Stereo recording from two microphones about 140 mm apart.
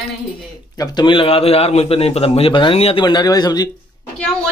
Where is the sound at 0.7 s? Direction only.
30° left (ahead or behind).